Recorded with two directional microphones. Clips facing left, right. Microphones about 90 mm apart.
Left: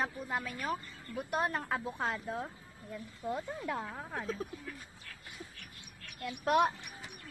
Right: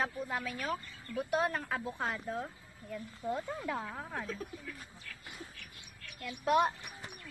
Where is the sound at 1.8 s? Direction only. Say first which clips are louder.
Left 1 dB; 20° left (ahead or behind).